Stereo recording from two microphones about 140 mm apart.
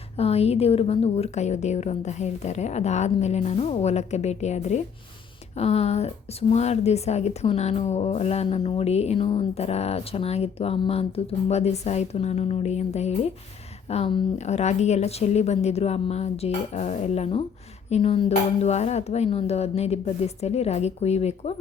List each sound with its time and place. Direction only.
0.2 s speech: 45° left (ahead or behind)
14.3 s speech: 55° left (ahead or behind)